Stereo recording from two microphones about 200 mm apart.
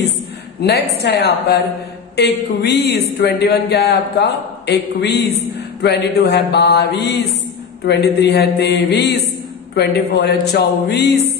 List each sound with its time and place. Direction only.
0.6 s a woman's voice: 55° left (ahead or behind)